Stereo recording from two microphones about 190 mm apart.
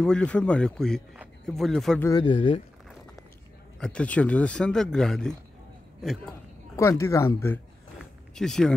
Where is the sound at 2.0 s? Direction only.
20° left (ahead or behind).